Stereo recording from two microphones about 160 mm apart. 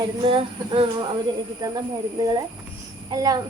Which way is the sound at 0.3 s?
35° right (ahead or behind).